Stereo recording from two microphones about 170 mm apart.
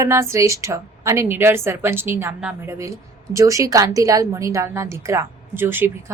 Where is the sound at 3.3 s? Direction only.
20° right (ahead or behind).